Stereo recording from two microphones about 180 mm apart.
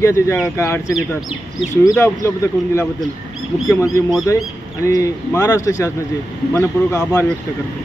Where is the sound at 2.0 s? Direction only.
15° left (ahead or behind).